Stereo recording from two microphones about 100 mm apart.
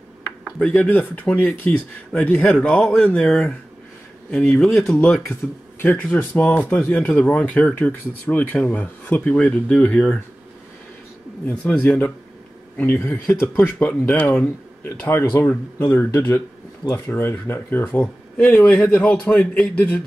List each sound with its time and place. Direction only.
0.6 s speech: 15° left (ahead or behind)
5.8 s speech: 20° left (ahead or behind)
11.4 s speech: 15° left (ahead or behind)